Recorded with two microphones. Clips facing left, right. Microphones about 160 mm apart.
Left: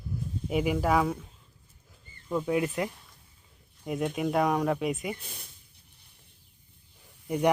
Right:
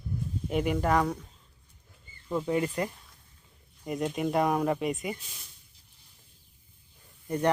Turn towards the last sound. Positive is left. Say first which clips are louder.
# left 1 dB
turn(degrees=10)  # may be behind; listen again after turning